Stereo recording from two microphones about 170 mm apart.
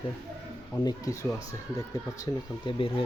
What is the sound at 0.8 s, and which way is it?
Speech, 20° left (ahead or behind).